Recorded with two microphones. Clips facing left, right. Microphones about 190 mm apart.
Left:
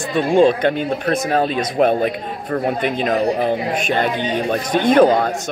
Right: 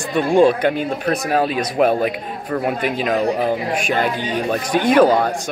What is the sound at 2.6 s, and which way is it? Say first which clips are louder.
Speech: left 1 dB; 5° right (ahead or behind).